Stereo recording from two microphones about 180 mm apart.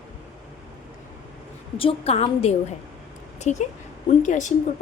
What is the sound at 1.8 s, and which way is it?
A woman's voice, 30° left (ahead or behind).